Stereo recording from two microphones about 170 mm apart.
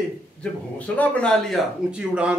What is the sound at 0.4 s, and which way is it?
A man's voice, 10° left (ahead or behind).